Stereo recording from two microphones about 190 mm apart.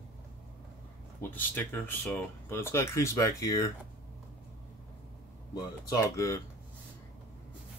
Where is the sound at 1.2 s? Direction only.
10° left (ahead or behind).